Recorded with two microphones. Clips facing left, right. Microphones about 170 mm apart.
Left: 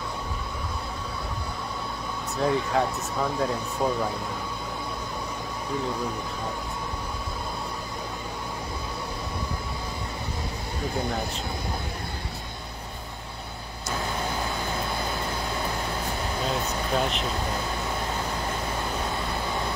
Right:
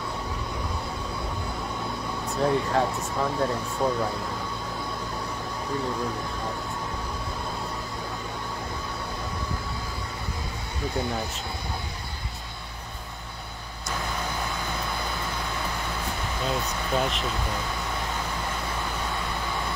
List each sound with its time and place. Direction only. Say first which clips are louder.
2.4 s speech: even; centre (ahead or behind)
16.6 s speech: left 1 dB; centre (ahead or behind)